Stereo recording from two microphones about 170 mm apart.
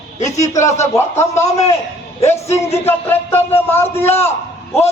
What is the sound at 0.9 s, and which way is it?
Speech, 15° left (ahead or behind).